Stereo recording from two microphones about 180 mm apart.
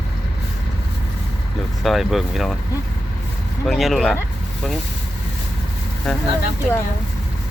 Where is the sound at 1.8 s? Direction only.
Centre (ahead or behind).